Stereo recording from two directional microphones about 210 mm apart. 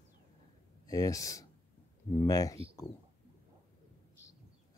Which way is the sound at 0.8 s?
15° left (ahead or behind).